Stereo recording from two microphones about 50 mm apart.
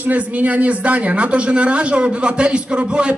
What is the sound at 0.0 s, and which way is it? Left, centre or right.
Speech, right.